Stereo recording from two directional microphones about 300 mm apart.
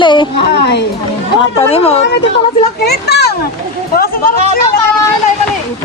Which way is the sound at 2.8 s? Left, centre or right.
Left.